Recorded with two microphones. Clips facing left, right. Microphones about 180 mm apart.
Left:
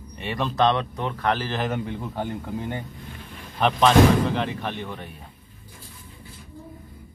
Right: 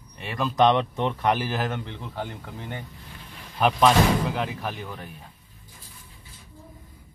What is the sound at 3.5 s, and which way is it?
Speech, 5° right (ahead or behind).